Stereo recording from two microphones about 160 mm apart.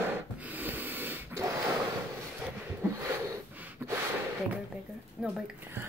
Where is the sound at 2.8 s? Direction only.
15° right (ahead or behind).